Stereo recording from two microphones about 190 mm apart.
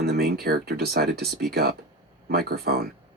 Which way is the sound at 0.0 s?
55° right (ahead or behind).